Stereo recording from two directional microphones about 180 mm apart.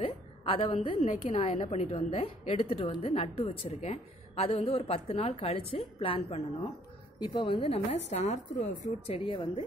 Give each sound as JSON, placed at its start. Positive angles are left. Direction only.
{"t": 0.0, "sound": "a woman's voice", "side_deg": 30}